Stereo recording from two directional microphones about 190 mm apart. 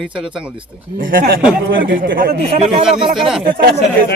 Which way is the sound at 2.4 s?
35° right (ahead or behind).